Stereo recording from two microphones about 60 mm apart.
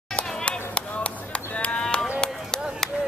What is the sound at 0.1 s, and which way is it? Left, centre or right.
Chop, centre.